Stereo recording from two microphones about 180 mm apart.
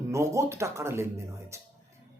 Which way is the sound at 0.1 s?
15° right (ahead or behind).